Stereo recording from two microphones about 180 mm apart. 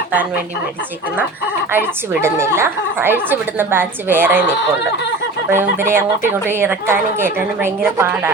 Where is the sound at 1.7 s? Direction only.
10° right (ahead or behind).